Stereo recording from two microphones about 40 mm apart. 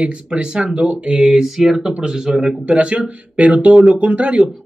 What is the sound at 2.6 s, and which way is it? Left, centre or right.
Speech, right.